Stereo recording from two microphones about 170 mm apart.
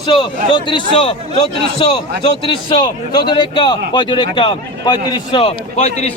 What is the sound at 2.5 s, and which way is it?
A man's voice, 25° left (ahead or behind).